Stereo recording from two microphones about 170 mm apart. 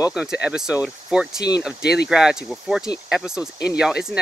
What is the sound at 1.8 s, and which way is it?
Speech, 75° left (ahead or behind).